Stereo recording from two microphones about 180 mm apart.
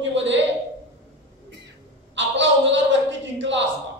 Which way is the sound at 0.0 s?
90° right.